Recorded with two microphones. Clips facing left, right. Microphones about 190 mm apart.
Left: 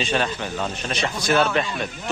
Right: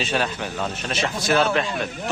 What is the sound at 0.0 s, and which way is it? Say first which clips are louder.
Speech: left 1 dB; 5° right (ahead or behind).